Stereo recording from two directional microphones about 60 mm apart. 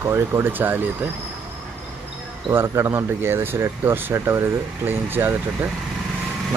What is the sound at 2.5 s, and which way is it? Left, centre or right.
Speech, right.